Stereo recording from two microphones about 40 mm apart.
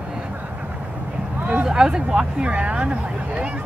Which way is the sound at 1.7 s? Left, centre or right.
Centre.